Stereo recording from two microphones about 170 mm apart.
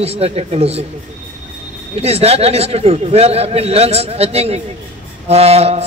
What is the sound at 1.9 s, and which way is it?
A man's voice, 35° right (ahead or behind).